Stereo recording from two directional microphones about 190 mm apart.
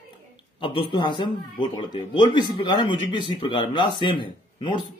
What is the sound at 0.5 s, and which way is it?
Music, 25° left (ahead or behind).